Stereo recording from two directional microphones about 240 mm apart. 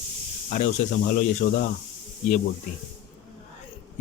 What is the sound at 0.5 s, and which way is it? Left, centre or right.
A man's voice, left.